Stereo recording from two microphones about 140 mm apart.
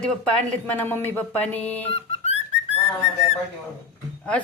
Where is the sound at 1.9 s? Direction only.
45° left (ahead or behind).